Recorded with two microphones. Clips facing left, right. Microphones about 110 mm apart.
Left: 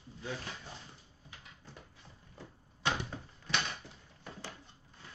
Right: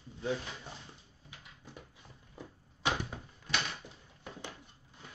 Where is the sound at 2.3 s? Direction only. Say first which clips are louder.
Right 3 dB; 15° right (ahead or behind).